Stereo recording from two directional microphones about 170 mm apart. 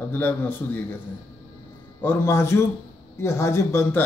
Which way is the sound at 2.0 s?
15° left (ahead or behind).